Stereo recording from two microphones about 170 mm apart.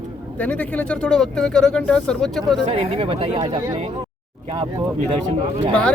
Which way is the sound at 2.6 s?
40° right (ahead or behind).